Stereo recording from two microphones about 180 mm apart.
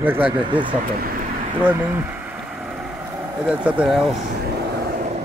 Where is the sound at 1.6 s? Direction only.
10° right (ahead or behind).